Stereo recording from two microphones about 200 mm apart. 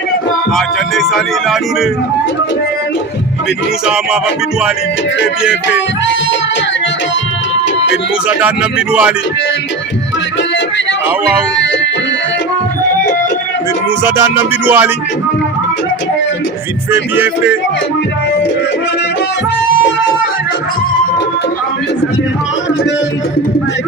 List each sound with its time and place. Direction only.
0.5 s music: centre (ahead or behind)
3.8 s music: 5° right (ahead or behind)
8.3 s speech: 5° right (ahead or behind)
11.6 s music: 65° left (ahead or behind)
14.0 s speech: 10° right (ahead or behind)
16.9 s speech: 10° right (ahead or behind)